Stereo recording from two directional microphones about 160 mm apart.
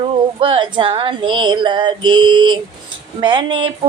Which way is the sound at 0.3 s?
35° right (ahead or behind).